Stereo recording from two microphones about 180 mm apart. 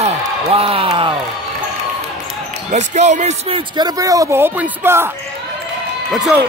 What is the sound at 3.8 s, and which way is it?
Speech, 20° right (ahead or behind).